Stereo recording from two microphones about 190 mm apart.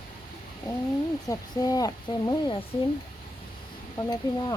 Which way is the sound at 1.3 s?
20° left (ahead or behind).